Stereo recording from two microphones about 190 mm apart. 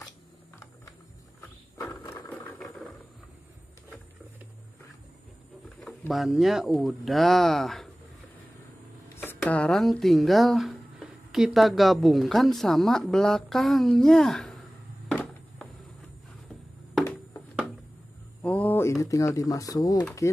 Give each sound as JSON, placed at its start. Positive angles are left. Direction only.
{"t": 1.9, "sound": "a sound", "side_deg": 10}
{"t": 2.2, "sound": "vehicle", "side_deg": 10}
{"t": 5.8, "sound": "speech", "side_deg": 0}
{"t": 9.2, "sound": "speech", "side_deg": 10}
{"t": 15.0, "sound": "a sound", "side_deg": 0}
{"t": 18.4, "sound": "typewriter", "side_deg": 10}